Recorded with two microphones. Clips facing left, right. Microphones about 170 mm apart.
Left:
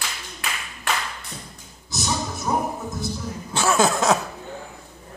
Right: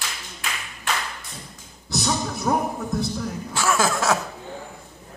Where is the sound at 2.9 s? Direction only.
60° right (ahead or behind).